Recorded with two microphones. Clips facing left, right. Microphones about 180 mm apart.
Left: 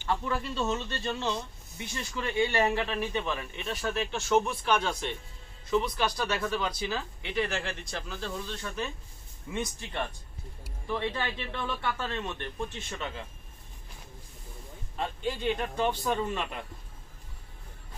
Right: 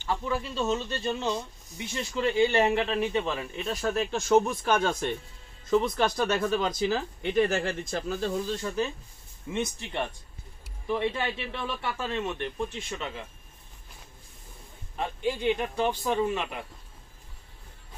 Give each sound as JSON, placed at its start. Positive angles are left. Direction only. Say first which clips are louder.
{"t": 0.1, "sound": "speech", "louder": "right 1 dB", "side_deg": -10}
{"t": 6.4, "sound": "speech", "louder": "right 4 dB", "side_deg": -25}
{"t": 6.7, "sound": "a man's voice", "louder": "right 6 dB", "side_deg": -45}
{"t": 15.0, "sound": "a man's voice", "louder": "right 3 dB", "side_deg": -10}